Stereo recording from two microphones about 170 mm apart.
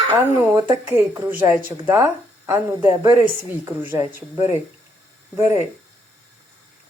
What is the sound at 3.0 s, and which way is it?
Speech, 25° right (ahead or behind).